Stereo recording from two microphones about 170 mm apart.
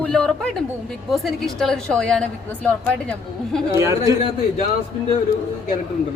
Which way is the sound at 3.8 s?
20° right (ahead or behind).